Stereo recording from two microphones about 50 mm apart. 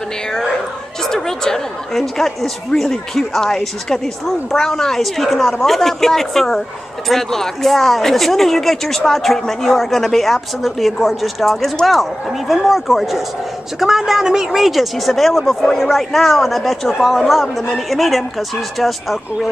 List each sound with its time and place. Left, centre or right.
0.3 s dog: centre
1.0 s speech: centre